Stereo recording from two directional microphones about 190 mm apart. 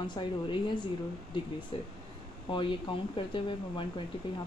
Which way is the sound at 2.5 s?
25° left (ahead or behind).